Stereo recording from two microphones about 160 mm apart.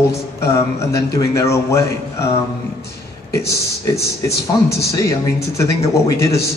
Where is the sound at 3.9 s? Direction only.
90° left.